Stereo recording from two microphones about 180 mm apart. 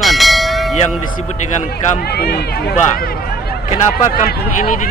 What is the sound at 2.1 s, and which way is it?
Speech, 65° left (ahead or behind).